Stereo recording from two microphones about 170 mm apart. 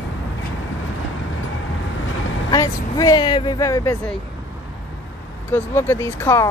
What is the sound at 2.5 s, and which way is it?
Speech, 20° left (ahead or behind).